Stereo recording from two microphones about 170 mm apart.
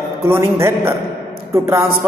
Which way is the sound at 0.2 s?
15° right (ahead or behind).